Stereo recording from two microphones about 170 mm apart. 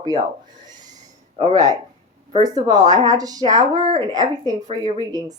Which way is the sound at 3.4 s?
45° right (ahead or behind).